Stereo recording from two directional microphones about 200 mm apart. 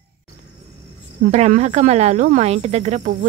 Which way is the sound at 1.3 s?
35° right (ahead or behind).